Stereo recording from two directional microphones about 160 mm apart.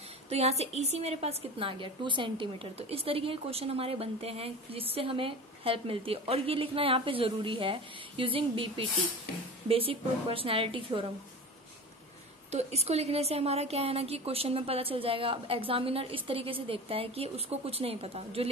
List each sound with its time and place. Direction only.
0.3 s a woman's voice: 40° right (ahead or behind)
12.4 s a woman's voice: 40° right (ahead or behind)